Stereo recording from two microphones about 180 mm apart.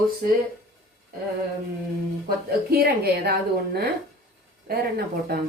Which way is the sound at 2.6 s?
60° right (ahead or behind).